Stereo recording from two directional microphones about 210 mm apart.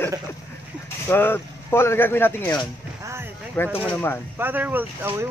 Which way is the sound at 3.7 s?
10° left (ahead or behind).